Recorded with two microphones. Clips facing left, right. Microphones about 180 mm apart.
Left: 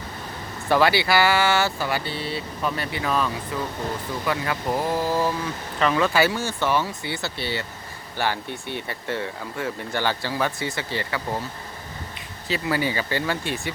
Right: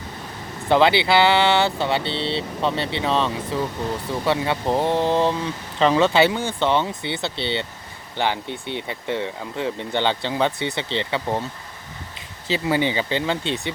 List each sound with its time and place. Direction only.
0.7 s speech: 20° right (ahead or behind)
12.5 s speech: 25° right (ahead or behind)